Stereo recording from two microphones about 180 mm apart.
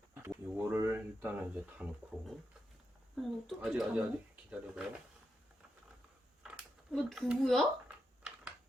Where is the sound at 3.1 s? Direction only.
Centre (ahead or behind).